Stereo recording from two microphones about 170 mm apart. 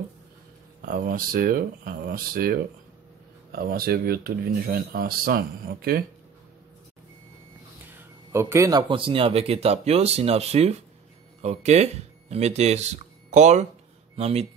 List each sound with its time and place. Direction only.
0.8 s speech: 55° right (ahead or behind)
8.3 s speech: 15° right (ahead or behind); by 14.4 s 40° right (ahead or behind)